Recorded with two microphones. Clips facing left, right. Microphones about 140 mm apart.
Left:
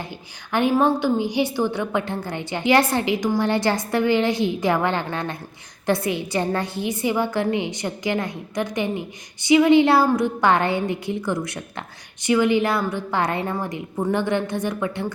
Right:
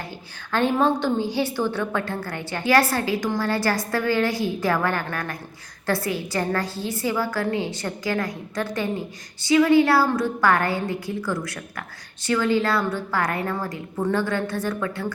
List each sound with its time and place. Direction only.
0.5 s a woman's voice: 15° left (ahead or behind)